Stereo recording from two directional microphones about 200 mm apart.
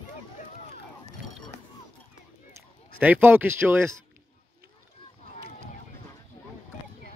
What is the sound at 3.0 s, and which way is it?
Speech, 10° right (ahead or behind).